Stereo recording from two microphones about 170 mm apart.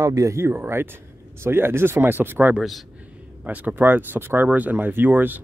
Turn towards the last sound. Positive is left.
turn(degrees=-10)  # may be behind; listen again after turning